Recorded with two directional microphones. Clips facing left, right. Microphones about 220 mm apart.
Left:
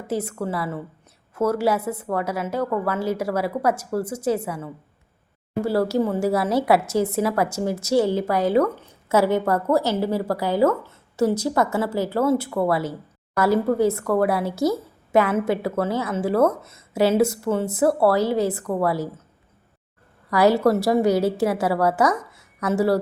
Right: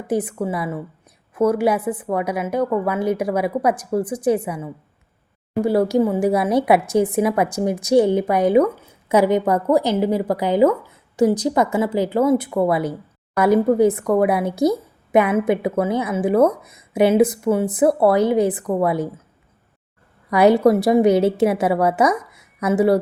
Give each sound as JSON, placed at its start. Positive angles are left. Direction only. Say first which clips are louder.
{"t": 0.1, "sound": "a woman's voice", "louder": "right 4 dB", "side_deg": -15}
{"t": 20.3, "sound": "a woman's voice", "louder": "right 4 dB", "side_deg": -20}